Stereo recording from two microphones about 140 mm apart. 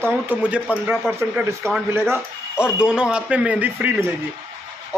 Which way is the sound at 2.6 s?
5° right (ahead or behind).